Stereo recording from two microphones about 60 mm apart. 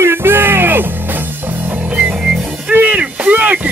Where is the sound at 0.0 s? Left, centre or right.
Right.